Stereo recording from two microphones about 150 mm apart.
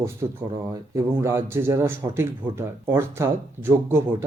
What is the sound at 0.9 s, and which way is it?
Speech, 20° right (ahead or behind).